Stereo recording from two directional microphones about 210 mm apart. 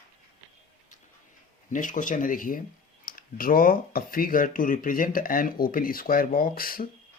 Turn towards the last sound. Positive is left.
turn(degrees=45)  # may be behind; listen again after turning